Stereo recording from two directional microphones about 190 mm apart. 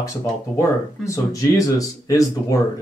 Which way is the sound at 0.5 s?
15° left (ahead or behind).